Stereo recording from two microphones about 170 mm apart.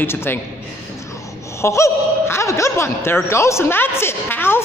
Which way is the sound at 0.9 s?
20° left (ahead or behind).